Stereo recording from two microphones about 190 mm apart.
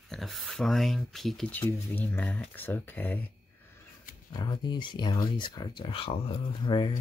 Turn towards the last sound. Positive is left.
turn(degrees=25)  # may be behind; listen again after turning